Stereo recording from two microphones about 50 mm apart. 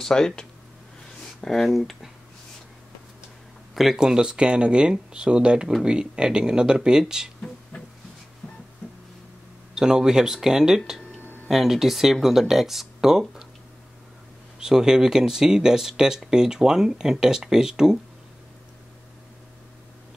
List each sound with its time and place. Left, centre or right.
0.0 s speech: centre
3.7 s speech: centre
4.0 s speech: centre
7.7 s music: left
9.8 s speech: centre
14.6 s speech: centre